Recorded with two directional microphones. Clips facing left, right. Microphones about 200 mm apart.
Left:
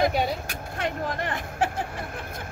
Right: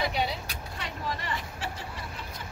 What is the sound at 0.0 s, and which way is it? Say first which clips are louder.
Vehicle: left 6 dB; 45° left (ahead or behind).